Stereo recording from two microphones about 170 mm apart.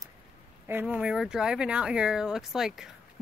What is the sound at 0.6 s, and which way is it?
Speech, 10° right (ahead or behind).